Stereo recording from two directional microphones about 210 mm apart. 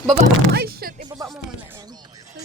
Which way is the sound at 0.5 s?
45° right (ahead or behind).